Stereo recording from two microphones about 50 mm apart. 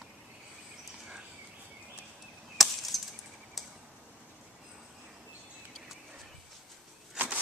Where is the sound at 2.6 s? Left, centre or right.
Centre.